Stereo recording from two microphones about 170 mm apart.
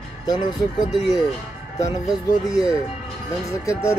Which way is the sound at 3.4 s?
20° left (ahead or behind).